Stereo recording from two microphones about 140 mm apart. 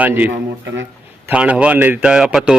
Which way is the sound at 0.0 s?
10° right (ahead or behind).